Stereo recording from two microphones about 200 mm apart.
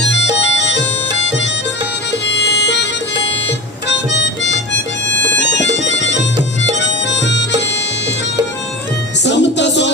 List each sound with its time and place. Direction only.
2.2 s music: 60° left (ahead or behind)
3.8 s harmonica: 60° left (ahead or behind)
5.2 s music: 65° left (ahead or behind)
6.7 s harmonica: 60° left (ahead or behind)
9.2 s music: 60° left (ahead or behind)